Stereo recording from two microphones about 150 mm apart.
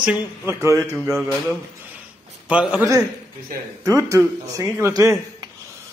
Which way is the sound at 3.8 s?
20° right (ahead or behind).